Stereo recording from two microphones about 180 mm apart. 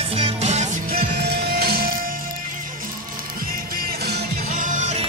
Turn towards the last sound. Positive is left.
turn(degrees=-40)  # may be behind; listen again after turning